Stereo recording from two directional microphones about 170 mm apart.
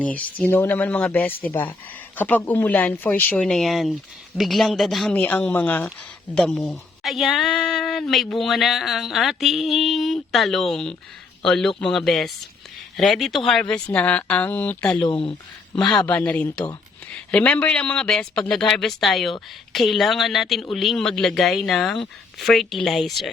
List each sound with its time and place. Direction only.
0.0 s speech: 10° left (ahead or behind)
15.0 s speech: 30° left (ahead or behind)
16.0 s speech: 10° left (ahead or behind)